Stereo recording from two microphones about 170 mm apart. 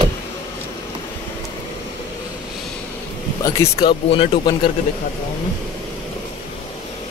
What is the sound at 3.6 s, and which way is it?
Speech, 20° left (ahead or behind).